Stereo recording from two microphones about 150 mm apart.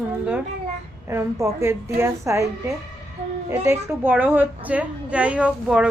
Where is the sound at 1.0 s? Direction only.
20° right (ahead or behind).